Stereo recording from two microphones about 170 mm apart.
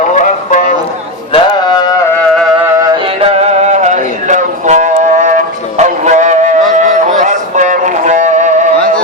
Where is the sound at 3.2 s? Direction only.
40° right (ahead or behind).